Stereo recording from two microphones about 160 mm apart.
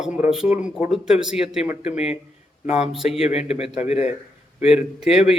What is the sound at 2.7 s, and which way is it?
Speech, 5° right (ahead or behind).